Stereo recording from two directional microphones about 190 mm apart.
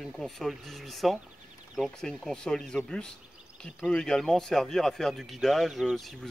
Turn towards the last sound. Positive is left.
turn(degrees=0)  # may be behind; listen again after turning